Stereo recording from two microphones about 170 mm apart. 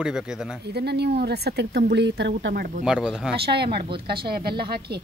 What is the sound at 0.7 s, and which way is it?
Speech, 75° right (ahead or behind).